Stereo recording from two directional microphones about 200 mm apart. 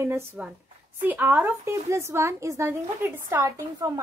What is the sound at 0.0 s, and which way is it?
A child's voice, 10° right (ahead or behind).